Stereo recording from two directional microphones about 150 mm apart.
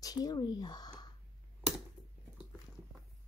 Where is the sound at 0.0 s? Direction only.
25° left (ahead or behind).